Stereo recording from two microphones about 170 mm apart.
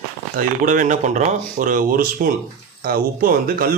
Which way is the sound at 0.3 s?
50° right (ahead or behind).